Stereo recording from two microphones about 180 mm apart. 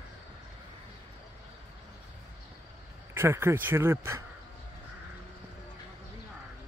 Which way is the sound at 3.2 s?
15° right (ahead or behind).